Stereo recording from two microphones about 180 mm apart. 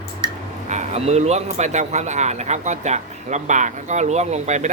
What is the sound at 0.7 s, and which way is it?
A man's voice, 40° right (ahead or behind).